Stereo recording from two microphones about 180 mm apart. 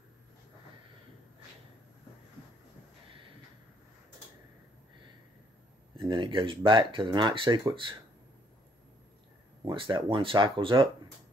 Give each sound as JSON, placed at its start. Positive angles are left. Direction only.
{"t": 5.9, "sound": "speech", "side_deg": -25}
{"t": 9.7, "sound": "speech", "side_deg": -25}